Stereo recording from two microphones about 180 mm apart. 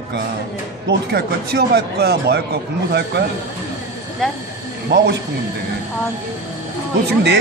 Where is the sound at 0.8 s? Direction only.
65° right (ahead or behind).